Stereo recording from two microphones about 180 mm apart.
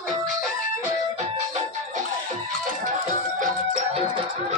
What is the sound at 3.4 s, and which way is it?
Music, 40° right (ahead or behind).